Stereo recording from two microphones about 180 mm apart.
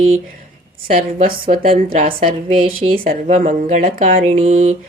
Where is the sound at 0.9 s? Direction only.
50° right (ahead or behind).